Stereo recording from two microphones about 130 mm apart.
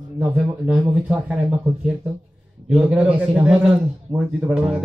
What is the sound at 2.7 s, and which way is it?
A man's voice, 10° right (ahead or behind).